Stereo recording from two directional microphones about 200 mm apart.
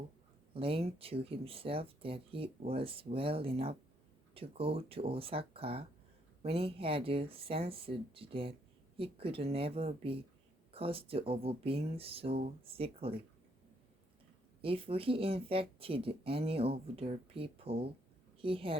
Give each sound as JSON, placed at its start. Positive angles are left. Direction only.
{"t": 0.5, "sound": "speech", "side_deg": -25}
{"t": 14.6, "sound": "speech", "side_deg": -30}